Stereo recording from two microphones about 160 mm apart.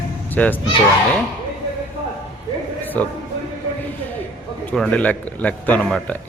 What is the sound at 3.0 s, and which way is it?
Speech, 10° left (ahead or behind).